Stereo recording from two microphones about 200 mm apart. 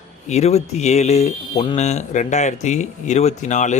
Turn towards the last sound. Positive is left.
turn(degrees=35)  # may be behind; listen again after turning